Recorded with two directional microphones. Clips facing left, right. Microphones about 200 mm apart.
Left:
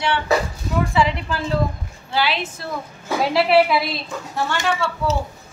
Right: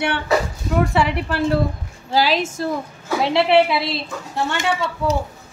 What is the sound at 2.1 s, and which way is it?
Speech, 40° right (ahead or behind).